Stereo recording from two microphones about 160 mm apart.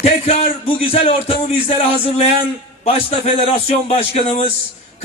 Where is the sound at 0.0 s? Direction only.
40° left (ahead or behind).